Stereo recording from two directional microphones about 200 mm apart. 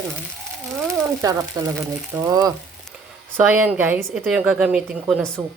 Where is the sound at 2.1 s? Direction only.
20° right (ahead or behind).